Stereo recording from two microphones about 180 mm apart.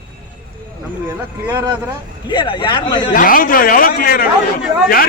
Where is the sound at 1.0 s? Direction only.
15° right (ahead or behind).